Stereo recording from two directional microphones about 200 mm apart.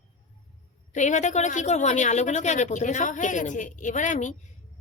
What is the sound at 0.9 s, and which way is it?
Speech, 35° left (ahead or behind).